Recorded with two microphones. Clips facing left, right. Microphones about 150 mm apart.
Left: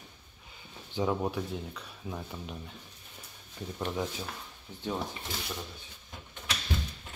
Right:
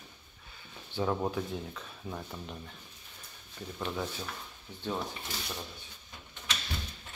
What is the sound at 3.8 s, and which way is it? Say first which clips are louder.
Speech: left 2 dB; 15° left (ahead or behind).